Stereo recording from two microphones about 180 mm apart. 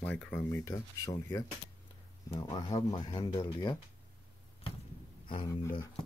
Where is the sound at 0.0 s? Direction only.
10° left (ahead or behind); by 3.7 s 25° left (ahead or behind).